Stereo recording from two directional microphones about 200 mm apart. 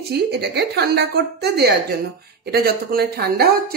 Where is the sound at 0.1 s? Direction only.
55° right (ahead or behind).